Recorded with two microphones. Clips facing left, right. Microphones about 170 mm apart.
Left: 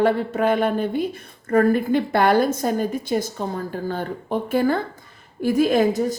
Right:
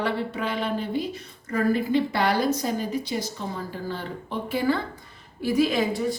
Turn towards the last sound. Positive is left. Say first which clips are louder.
# left 6 dB
turn(degrees=45)  # may be behind; listen again after turning